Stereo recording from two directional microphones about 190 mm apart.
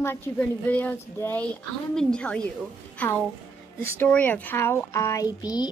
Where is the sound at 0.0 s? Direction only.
10° left (ahead or behind).